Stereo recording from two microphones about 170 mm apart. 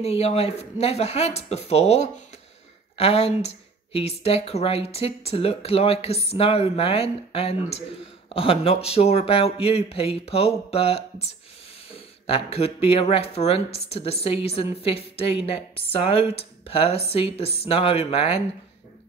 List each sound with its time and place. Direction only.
0.0 s speech: 35° left (ahead or behind)
12.3 s speech: 35° left (ahead or behind)